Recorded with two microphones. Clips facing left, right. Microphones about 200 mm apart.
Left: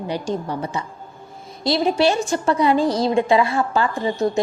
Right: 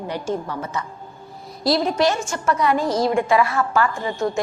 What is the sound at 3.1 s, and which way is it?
A woman's voice, 20° left (ahead or behind).